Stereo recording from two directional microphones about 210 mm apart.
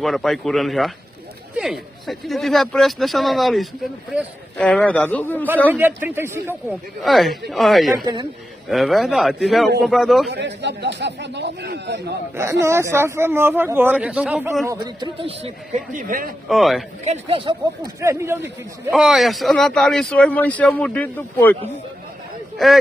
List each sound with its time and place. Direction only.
0.0 s a man's voice: centre (ahead or behind)
5.7 s speech: 10° right (ahead or behind)
7.0 s a man's voice: centre (ahead or behind)
8.0 s speech: 20° right (ahead or behind)
8.6 s a man's voice: centre (ahead or behind)
10.3 s speech: 55° right (ahead or behind)
12.4 s speech: 15° right (ahead or behind)
15.0 s speech: 25° right (ahead or behind)
16.4 s a man's voice: centre (ahead or behind)
17.0 s speech: 30° right (ahead or behind)
18.0 s a man's voice: 10° right (ahead or behind); by 21.5 s 10° left (ahead or behind)